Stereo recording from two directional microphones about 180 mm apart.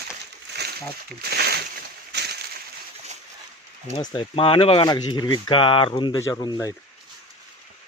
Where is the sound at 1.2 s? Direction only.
60° right (ahead or behind).